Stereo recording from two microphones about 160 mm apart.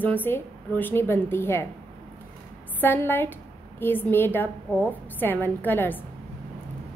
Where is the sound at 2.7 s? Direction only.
15° left (ahead or behind).